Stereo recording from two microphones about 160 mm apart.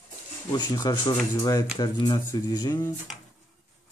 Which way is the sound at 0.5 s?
25° left (ahead or behind).